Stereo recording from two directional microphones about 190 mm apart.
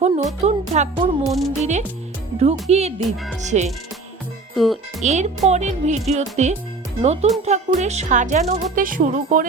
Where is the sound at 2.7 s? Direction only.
35° right (ahead or behind).